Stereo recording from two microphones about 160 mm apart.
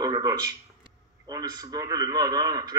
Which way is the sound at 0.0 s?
25° right (ahead or behind).